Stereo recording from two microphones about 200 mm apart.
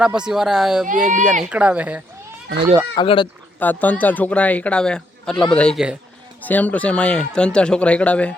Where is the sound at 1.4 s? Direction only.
5° right (ahead or behind).